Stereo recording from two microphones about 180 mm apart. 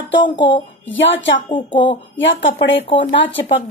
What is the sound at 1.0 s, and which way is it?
Speech, 90° left.